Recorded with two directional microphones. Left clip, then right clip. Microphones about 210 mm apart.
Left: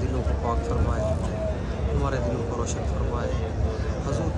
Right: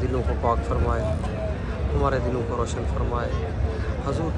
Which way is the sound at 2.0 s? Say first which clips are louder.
Right 5 dB; 10° left (ahead or behind).